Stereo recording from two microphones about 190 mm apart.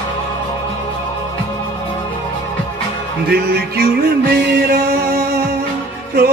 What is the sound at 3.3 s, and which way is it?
Music, 55° right (ahead or behind).